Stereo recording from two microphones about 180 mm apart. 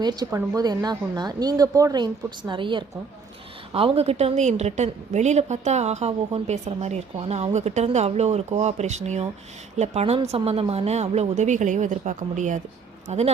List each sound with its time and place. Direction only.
0.0 s a woman's voice: 20° right (ahead or behind); by 13.3 s 40° right (ahead or behind)